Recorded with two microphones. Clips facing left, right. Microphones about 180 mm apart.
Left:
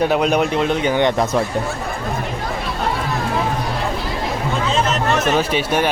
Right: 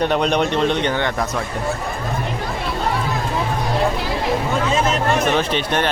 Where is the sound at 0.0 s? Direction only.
5° left (ahead or behind).